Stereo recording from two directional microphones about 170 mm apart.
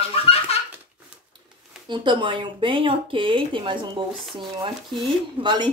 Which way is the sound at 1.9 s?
25° right (ahead or behind).